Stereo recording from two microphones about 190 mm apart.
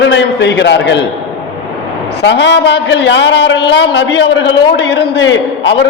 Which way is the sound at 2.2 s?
65° left (ahead or behind).